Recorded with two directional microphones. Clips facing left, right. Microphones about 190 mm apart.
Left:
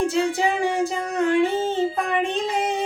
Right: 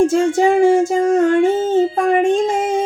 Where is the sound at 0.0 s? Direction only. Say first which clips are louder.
Right 8 dB; 45° right (ahead or behind).